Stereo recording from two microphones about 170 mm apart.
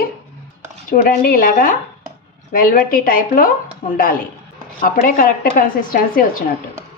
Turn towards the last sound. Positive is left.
turn(degrees=55)  # may be behind; listen again after turning